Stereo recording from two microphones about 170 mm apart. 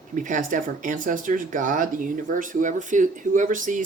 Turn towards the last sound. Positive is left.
turn(degrees=-50)  # may be behind; listen again after turning